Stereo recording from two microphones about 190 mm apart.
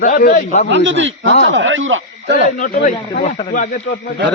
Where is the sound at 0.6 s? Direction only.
70° right (ahead or behind); by 2.4 s 90° right.